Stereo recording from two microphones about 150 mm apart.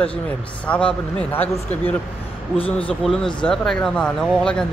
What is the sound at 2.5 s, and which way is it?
Speech, 35° left (ahead or behind).